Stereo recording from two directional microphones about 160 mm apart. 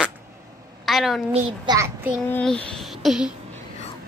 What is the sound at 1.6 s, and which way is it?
Child singing, 15° right (ahead or behind).